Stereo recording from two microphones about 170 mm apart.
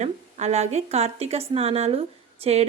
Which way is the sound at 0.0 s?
40° right (ahead or behind).